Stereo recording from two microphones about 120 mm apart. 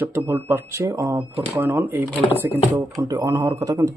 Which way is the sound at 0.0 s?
20° right (ahead or behind).